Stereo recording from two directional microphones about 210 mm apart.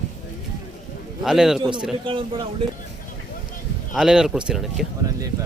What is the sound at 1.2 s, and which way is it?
Speech, centre (ahead or behind).